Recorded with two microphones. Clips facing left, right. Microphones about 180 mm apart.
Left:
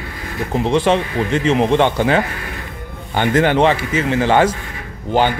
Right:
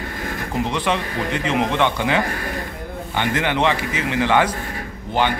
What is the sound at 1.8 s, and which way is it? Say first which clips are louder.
A man's voice: left 4 dB; 40° left (ahead or behind).